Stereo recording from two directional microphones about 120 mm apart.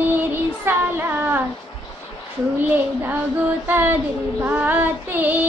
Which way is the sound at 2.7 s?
15° right (ahead or behind).